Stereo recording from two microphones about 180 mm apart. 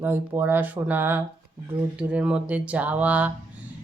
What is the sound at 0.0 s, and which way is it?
A woman's voice, 10° right (ahead or behind).